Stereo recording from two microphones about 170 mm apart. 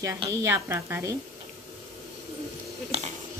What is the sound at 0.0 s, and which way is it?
A woman's voice, 20° right (ahead or behind).